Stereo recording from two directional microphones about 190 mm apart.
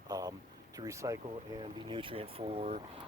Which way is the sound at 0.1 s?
20° right (ahead or behind).